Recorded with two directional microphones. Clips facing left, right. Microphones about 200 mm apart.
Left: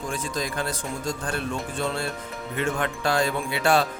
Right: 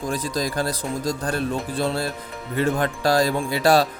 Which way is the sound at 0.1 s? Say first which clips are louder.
Right 5 dB; 35° right (ahead or behind).